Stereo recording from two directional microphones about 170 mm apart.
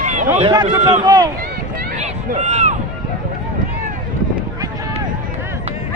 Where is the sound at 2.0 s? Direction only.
40° right (ahead or behind).